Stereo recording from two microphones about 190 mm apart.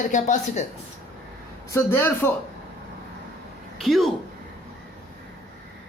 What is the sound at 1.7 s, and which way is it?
Speech, 15° left (ahead or behind).